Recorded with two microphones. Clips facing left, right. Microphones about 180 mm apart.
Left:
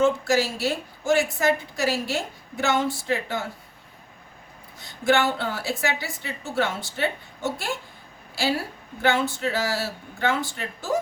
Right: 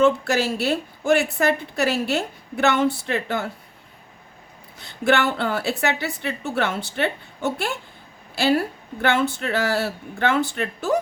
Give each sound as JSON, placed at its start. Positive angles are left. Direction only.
{"t": 0.0, "sound": "a woman's voice", "side_deg": -65}
{"t": 4.8, "sound": "a woman's voice", "side_deg": -65}